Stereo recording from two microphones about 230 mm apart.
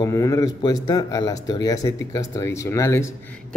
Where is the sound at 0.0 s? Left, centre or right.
Centre.